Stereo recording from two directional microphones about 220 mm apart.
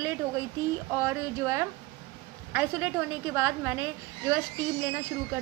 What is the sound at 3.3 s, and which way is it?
Speech, 10° right (ahead or behind).